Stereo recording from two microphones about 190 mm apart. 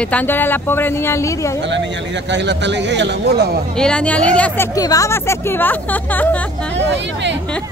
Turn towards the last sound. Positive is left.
turn(degrees=-70)  # may be behind; listen again after turning